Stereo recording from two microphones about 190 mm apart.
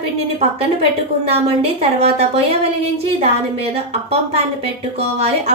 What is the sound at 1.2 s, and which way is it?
A woman's voice, 30° right (ahead or behind).